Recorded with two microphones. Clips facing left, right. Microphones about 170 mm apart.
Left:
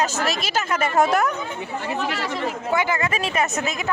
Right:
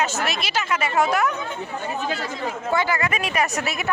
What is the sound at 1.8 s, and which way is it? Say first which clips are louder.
Speech: left 2 dB; 85° left.